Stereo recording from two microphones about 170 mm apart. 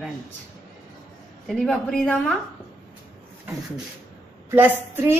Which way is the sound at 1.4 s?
5° left (ahead or behind).